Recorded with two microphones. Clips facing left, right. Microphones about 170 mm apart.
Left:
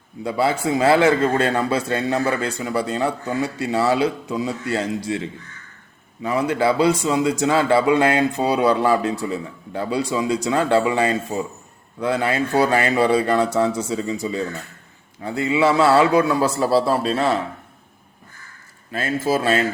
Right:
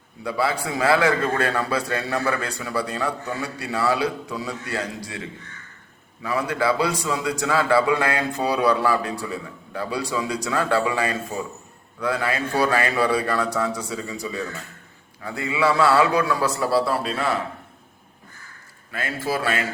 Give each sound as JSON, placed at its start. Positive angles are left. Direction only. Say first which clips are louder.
{"t": 0.2, "sound": "a man's voice", "louder": "left 4 dB", "side_deg": 25}
{"t": 18.9, "sound": "a man's voice", "louder": "left 5 dB", "side_deg": 25}